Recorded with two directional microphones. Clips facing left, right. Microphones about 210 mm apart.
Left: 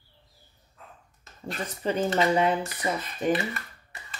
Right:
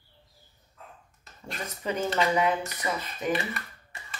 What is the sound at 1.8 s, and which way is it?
Speech, 30° left (ahead or behind).